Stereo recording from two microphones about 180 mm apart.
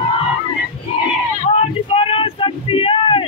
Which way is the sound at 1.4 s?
35° left (ahead or behind).